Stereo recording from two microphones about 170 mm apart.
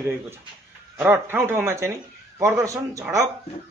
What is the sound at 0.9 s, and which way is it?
A man's voice, 10° right (ahead or behind).